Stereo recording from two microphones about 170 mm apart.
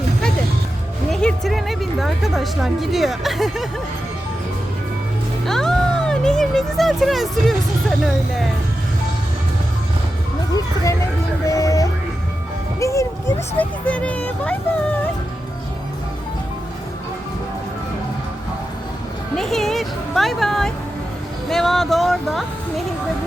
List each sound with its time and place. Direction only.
1.1 s a woman's voice: centre (ahead or behind)
5.5 s speech: centre (ahead or behind)
11.4 s music: 20° left (ahead or behind)
12.8 s speech: 15° left (ahead or behind)
19.4 s speech: centre (ahead or behind)